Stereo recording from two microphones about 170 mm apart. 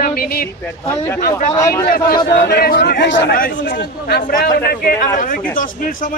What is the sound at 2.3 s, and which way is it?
A man's voice, 65° left (ahead or behind).